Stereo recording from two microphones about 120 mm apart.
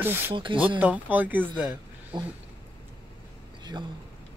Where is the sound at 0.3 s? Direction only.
45° right (ahead or behind).